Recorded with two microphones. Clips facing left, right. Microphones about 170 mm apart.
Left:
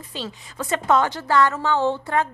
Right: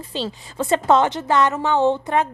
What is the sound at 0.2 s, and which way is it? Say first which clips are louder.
A woman's voice: right 5 dB; 30° right (ahead or behind).